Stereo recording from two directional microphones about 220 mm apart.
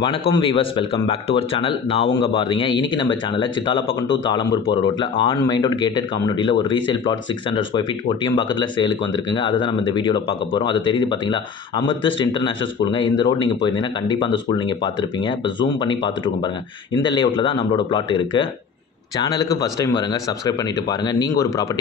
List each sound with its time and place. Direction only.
0.0 s speech: 25° left (ahead or behind)
5.1 s speech: 20° left (ahead or behind)